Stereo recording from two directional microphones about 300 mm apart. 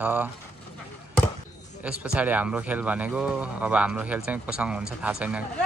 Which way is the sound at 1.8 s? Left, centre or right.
Centre.